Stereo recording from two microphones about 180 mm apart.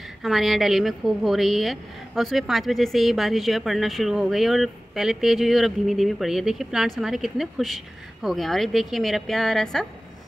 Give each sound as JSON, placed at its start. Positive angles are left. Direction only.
{"t": 0.2, "sound": "a woman's voice", "side_deg": 0}